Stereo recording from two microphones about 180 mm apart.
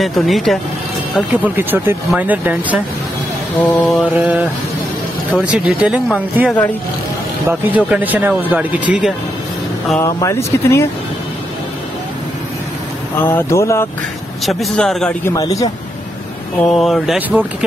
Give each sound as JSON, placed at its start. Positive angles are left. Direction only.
{"t": 0.0, "sound": "speech", "side_deg": 0}
{"t": 3.5, "sound": "speech", "side_deg": 10}
{"t": 4.2, "sound": "speech", "side_deg": -5}
{"t": 9.9, "sound": "speech", "side_deg": 15}
{"t": 13.1, "sound": "speech", "side_deg": 15}
{"t": 14.4, "sound": "speech", "side_deg": 0}
{"t": 15.2, "sound": "a man's voice", "side_deg": 20}
{"t": 16.7, "sound": "speech", "side_deg": 0}